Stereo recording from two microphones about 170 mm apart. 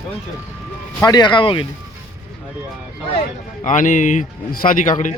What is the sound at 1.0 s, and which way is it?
Speech, 25° left (ahead or behind).